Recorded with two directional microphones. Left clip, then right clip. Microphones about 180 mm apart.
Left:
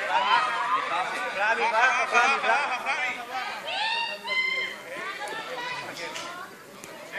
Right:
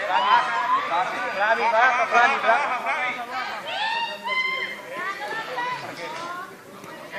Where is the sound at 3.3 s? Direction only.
50° left (ahead or behind).